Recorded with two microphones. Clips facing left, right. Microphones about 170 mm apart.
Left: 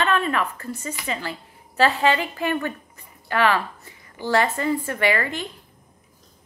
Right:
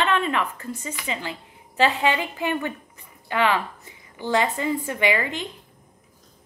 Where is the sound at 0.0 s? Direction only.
20° right (ahead or behind).